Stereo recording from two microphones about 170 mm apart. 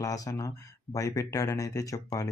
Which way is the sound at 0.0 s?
20° left (ahead or behind).